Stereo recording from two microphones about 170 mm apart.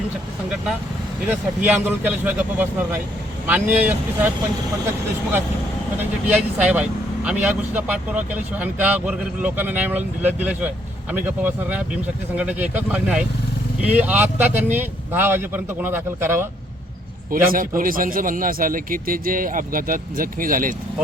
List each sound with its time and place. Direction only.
1.3 s speech: 10° right (ahead or behind)
6.0 s speech: 10° right (ahead or behind)
17.3 s a man's voice: 55° right (ahead or behind)